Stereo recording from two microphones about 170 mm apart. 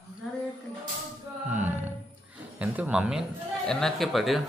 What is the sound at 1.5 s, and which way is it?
Music, 10° right (ahead or behind).